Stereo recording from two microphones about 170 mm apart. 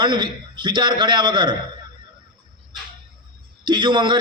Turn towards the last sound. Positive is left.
turn(degrees=-25)  # may be behind; listen again after turning